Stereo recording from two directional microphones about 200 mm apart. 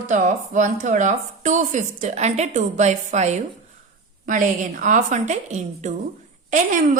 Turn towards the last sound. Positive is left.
turn(degrees=-40)  # may be behind; listen again after turning